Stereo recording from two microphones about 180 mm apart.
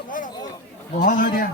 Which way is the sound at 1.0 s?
50° left (ahead or behind).